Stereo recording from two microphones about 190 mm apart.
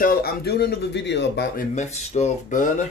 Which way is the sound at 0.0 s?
50° left (ahead or behind).